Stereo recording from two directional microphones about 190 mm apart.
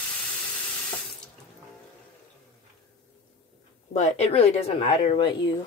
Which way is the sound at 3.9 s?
35° left (ahead or behind).